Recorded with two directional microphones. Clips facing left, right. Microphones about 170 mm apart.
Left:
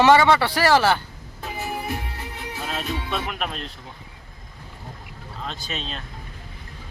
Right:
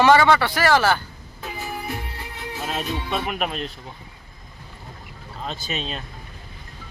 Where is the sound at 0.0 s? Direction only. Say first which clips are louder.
Even; 25° left (ahead or behind).